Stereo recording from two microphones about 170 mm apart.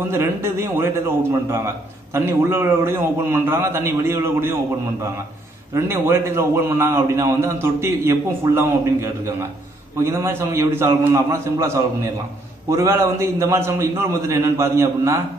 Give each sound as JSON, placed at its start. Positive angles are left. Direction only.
{"t": 0.1, "sound": "a man's voice", "side_deg": -15}